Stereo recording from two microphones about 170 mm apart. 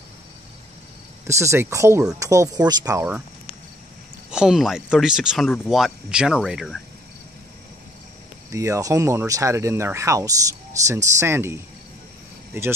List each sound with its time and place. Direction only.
1.2 s speech: 15° right (ahead or behind)
4.3 s speech: 5° right (ahead or behind)
8.5 s speech: 15° right (ahead or behind)